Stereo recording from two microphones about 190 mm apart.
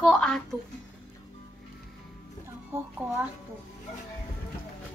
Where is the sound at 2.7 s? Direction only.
10° right (ahead or behind).